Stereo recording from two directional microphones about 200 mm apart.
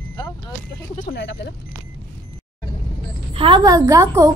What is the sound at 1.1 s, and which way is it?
Speech, 60° left (ahead or behind).